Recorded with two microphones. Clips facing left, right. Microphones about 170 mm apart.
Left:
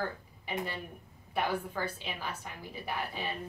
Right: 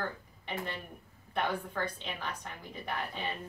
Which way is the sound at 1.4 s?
5° left (ahead or behind).